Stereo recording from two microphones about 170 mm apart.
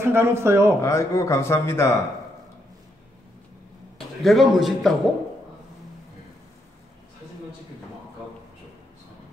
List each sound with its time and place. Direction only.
0.0 s speech: 15° right (ahead or behind)
0.7 s speech: 20° left (ahead or behind)
4.2 s a man's voice: centre (ahead or behind)